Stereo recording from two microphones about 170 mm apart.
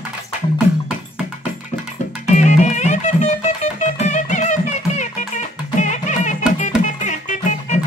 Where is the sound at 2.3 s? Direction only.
45° left (ahead or behind).